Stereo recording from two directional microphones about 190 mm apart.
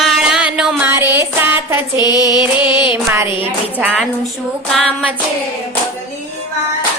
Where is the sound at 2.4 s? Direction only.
5° right (ahead or behind).